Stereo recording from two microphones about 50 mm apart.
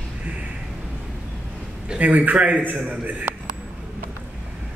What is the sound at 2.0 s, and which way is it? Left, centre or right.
A man's voice, right.